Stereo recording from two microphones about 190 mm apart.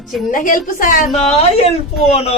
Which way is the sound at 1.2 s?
30° left (ahead or behind).